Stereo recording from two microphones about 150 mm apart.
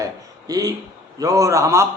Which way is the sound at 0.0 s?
25° right (ahead or behind).